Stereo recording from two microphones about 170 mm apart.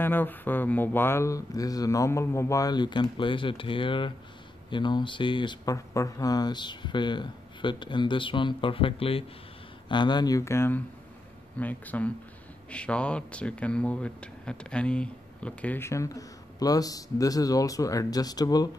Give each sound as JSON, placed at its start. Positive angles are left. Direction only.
{"t": 0.0, "sound": "speech", "side_deg": 10}